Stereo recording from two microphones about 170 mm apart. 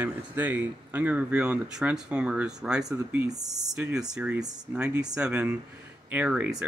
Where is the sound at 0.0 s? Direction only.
10° right (ahead or behind).